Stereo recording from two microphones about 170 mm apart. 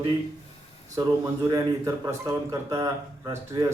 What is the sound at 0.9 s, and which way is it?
Speech, 20° right (ahead or behind).